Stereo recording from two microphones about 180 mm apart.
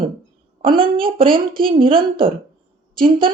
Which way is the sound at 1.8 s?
30° right (ahead or behind).